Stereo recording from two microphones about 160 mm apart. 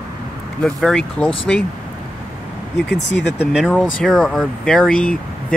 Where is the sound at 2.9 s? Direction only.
90° left.